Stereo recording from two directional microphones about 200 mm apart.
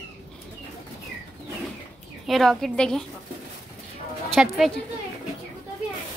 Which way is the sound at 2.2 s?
Centre (ahead or behind).